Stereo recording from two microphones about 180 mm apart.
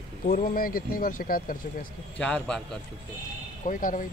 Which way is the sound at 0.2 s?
50° left (ahead or behind).